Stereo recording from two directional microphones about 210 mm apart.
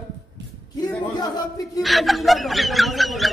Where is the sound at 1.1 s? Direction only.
15° left (ahead or behind).